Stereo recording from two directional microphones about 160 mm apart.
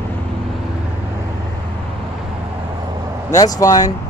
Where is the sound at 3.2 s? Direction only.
20° left (ahead or behind).